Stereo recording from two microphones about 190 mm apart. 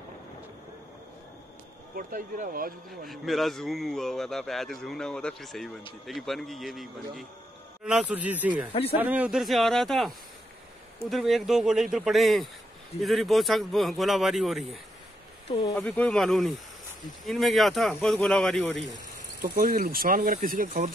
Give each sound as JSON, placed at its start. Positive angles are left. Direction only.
{"t": 2.0, "sound": "speech", "side_deg": -45}
{"t": 3.1, "sound": "a man's voice", "side_deg": 0}
{"t": 15.8, "sound": "a man's voice", "side_deg": 5}
{"t": 19.4, "sound": "speech", "side_deg": -50}